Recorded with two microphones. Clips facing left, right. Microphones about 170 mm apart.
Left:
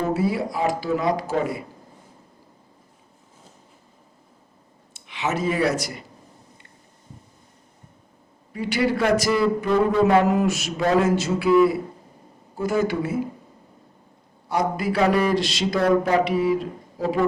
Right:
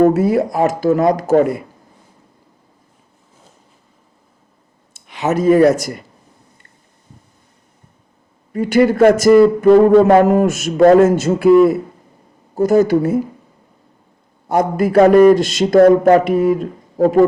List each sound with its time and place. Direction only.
0.0 s speech: 50° right (ahead or behind)
4.9 s speech: 45° right (ahead or behind)
8.5 s speech: 50° right (ahead or behind)
14.4 s speech: 50° right (ahead or behind)